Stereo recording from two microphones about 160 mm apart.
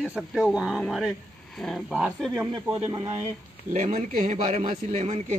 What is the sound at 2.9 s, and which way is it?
Speech, 20° right (ahead or behind).